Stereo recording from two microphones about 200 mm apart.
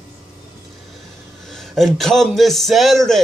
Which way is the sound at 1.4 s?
Centre (ahead or behind).